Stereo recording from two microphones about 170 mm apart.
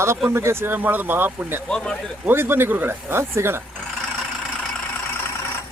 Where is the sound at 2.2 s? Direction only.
15° right (ahead or behind).